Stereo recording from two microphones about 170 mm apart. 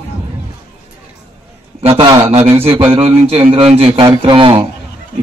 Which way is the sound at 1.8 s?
35° right (ahead or behind).